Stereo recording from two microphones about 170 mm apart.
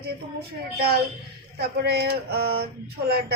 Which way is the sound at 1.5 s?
75° right (ahead or behind).